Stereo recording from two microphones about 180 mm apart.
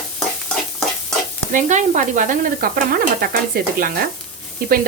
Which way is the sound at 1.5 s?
45° right (ahead or behind).